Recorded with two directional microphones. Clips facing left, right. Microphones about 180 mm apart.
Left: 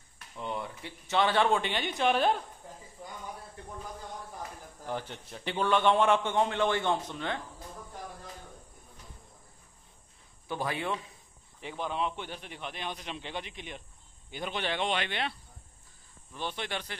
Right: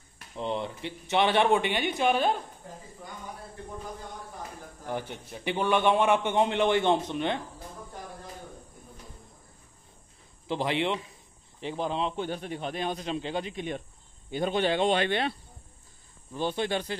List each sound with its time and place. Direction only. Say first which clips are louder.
0.4 s a man's voice: right 5 dB; 25° right (ahead or behind); by 2.3 s centre (ahead or behind)
4.8 s a man's voice: right 2 dB; 10° right (ahead or behind)
10.5 s a man's voice: right 5 dB; 20° right (ahead or behind)
12.3 s speech: right 8 dB; 45° right (ahead or behind)
16.3 s speech: right 8 dB; 40° right (ahead or behind)